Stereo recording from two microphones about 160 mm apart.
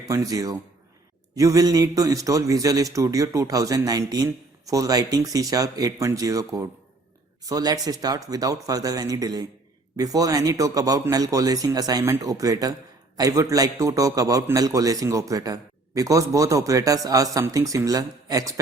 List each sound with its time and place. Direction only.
0.0 s a man's voice: 20° right (ahead or behind)